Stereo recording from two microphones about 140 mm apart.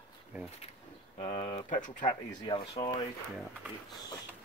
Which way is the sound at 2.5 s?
45° left (ahead or behind).